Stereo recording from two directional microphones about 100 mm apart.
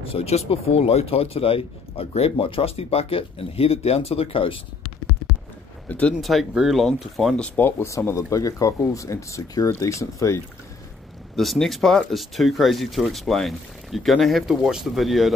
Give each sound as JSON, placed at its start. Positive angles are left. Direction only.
{"t": 0.0, "sound": "speech", "side_deg": 80}
{"t": 5.9, "sound": "speech", "side_deg": 15}
{"t": 6.2, "sound": "speech", "side_deg": 0}
{"t": 7.8, "sound": "speech", "side_deg": 25}
{"t": 11.3, "sound": "speech", "side_deg": 0}